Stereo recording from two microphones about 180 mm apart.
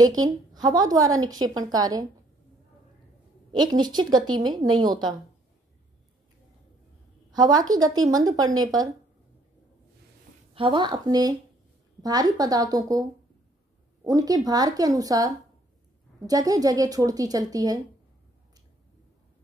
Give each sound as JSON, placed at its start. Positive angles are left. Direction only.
{"t": 0.0, "sound": "a woman's voice", "side_deg": -20}
{"t": 3.5, "sound": "a woman's voice", "side_deg": -25}
{"t": 7.2, "sound": "a woman's voice", "side_deg": -20}
{"t": 10.5, "sound": "a woman's voice", "side_deg": -30}
{"t": 14.0, "sound": "a woman's voice", "side_deg": -20}